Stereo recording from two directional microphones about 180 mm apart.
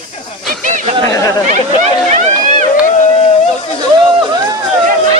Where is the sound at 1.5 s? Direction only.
40° right (ahead or behind).